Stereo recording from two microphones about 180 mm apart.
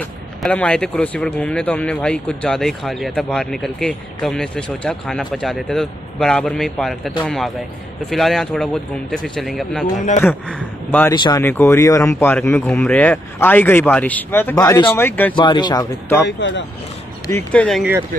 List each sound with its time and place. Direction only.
0.4 s speech: 5° left (ahead or behind)
11.1 s speech: 25° left (ahead or behind)
11.4 s speech: 15° left (ahead or behind)
15.0 s speech: 10° left (ahead or behind)
15.3 s speech: 25° left (ahead or behind)
16.3 s speech: 90° left
17.3 s speech: 10° left (ahead or behind)